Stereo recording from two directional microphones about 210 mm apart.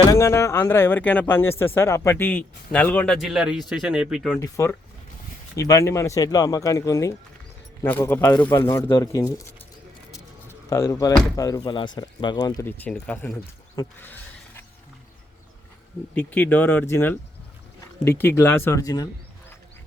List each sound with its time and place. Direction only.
0.1 s speech: 10° left (ahead or behind)
4.4 s speech: 15° left (ahead or behind)
10.7 s speech: 15° left (ahead or behind)
13.7 s a sound: 10° left (ahead or behind)
16.1 s speech: 10° left (ahead or behind)